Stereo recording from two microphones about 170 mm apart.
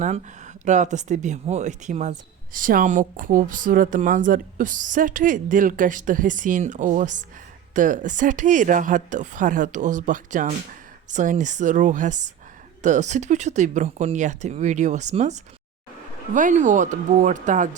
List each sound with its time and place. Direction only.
0.0 s speech: 45° right (ahead or behind)